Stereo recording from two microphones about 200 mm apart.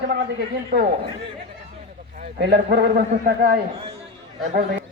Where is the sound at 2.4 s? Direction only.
55° right (ahead or behind).